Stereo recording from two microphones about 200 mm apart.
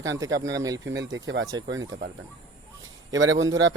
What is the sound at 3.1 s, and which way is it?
Speech, 70° right (ahead or behind).